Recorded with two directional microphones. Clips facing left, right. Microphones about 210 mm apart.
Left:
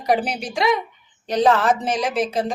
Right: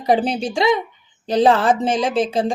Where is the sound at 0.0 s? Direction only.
25° right (ahead or behind).